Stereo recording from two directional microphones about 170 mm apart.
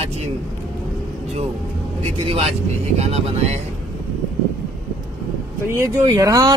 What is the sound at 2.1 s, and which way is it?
Speech, 35° right (ahead or behind).